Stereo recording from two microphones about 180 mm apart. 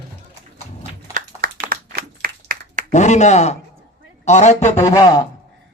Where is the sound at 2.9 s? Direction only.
40° left (ahead or behind).